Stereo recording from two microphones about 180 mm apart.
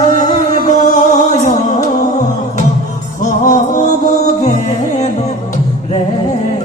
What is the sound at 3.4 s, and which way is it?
Music, 45° left (ahead or behind).